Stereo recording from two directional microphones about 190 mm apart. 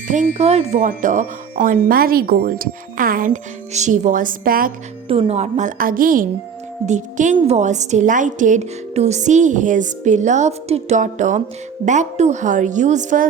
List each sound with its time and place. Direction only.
0.3 s speech: 35° right (ahead or behind)
5.0 s a woman's voice: 30° right (ahead or behind)